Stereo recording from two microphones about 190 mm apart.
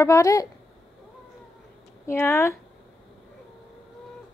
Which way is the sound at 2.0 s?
15° left (ahead or behind).